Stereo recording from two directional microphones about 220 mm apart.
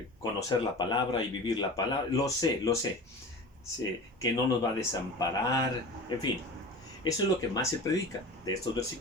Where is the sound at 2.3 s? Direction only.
15° left (ahead or behind).